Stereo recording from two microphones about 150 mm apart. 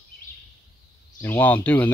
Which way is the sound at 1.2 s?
15° left (ahead or behind).